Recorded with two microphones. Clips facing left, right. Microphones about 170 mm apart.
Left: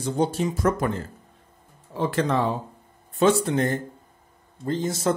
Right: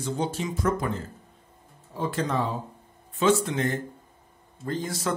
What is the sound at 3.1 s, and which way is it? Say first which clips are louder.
Speech: left 3 dB; 40° left (ahead or behind).